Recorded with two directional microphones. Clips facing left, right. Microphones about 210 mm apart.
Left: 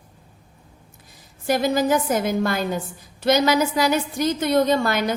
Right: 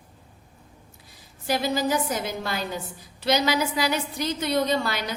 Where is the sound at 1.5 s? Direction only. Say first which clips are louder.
Left 5 dB; 50° left (ahead or behind).